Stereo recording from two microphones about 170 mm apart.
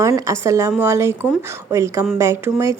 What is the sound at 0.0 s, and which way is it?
A woman's voice, 20° right (ahead or behind).